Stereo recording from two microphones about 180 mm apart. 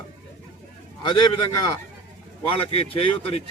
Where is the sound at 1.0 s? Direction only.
25° left (ahead or behind).